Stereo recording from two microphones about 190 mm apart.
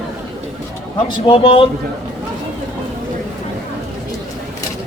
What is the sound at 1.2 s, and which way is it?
Speech, 30° left (ahead or behind).